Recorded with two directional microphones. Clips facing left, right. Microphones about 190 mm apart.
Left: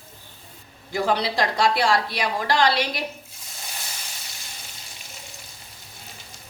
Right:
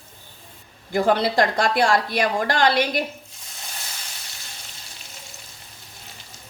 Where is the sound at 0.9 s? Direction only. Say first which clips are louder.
Right 4 dB; 50° right (ahead or behind).